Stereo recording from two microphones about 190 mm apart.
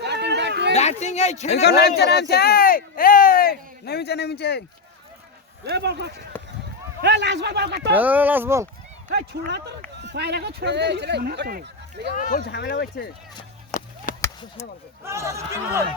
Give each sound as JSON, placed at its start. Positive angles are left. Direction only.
{"t": 0.0, "sound": "a sound", "side_deg": -65}
{"t": 0.7, "sound": "speech", "side_deg": 35}
{"t": 2.0, "sound": "speech", "side_deg": 60}
{"t": 5.6, "sound": "speech", "side_deg": -60}
{"t": 6.3, "sound": "a sound", "side_deg": 10}
{"t": 7.0, "sound": "speech", "side_deg": -65}
{"t": 7.9, "sound": "speech", "side_deg": -10}
{"t": 9.0, "sound": "speech", "side_deg": -60}
{"t": 12.1, "sound": "speech", "side_deg": 45}
{"t": 13.7, "sound": "a sound", "side_deg": 45}
{"t": 15.0, "sound": "speech", "side_deg": -15}